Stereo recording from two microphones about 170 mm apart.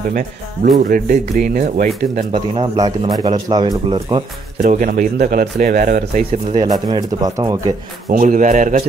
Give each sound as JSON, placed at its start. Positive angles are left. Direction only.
{"t": 0.1, "sound": "a man's voice", "side_deg": -55}
{"t": 2.3, "sound": "speech", "side_deg": -30}
{"t": 4.6, "sound": "a man's voice", "side_deg": -55}
{"t": 6.5, "sound": "speech", "side_deg": -25}
{"t": 8.1, "sound": "a man's voice", "side_deg": -50}